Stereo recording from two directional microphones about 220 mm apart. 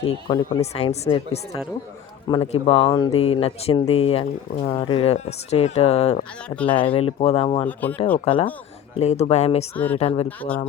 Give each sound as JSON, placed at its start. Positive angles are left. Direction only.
{"t": 0.0, "sound": "speech", "side_deg": 20}
{"t": 7.7, "sound": "speech", "side_deg": 5}
{"t": 8.2, "sound": "speech", "side_deg": 25}
{"t": 9.7, "sound": "speech", "side_deg": 5}
{"t": 10.0, "sound": "speech", "side_deg": 25}
{"t": 10.2, "sound": "speech", "side_deg": 5}